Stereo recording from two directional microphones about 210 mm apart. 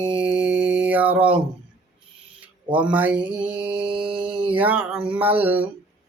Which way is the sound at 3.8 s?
25° right (ahead or behind).